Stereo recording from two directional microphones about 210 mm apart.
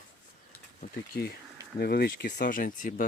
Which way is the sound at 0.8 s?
50° left (ahead or behind).